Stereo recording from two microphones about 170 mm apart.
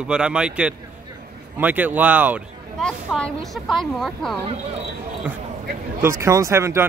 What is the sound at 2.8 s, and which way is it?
Speech, 5° left (ahead or behind).